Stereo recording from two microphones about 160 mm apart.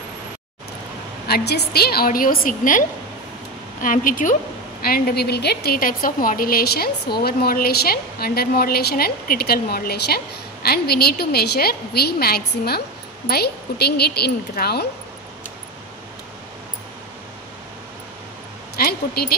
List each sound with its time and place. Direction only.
1.2 s a woman's voice: 85° left; by 2.8 s 60° left (ahead or behind)
3.8 s a woman's voice: 60° left (ahead or behind)
4.8 s a woman's voice: 70° left (ahead or behind)
18.8 s a sound: 70° left (ahead or behind)